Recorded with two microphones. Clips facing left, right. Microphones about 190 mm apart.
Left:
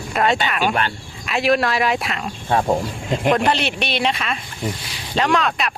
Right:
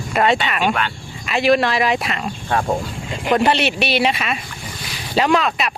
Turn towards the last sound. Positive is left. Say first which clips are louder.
# right 2 dB
turn(degrees=0)  # may be behind; listen again after turning